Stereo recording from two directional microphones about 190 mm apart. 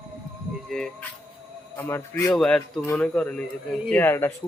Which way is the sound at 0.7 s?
Centre (ahead or behind).